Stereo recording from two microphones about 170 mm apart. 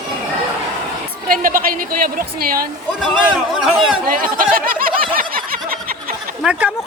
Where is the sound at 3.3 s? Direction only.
Centre (ahead or behind).